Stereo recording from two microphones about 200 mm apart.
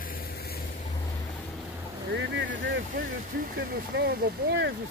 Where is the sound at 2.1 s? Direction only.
65° right (ahead or behind).